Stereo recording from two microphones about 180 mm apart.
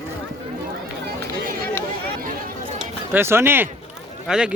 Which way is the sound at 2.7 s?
10° right (ahead or behind).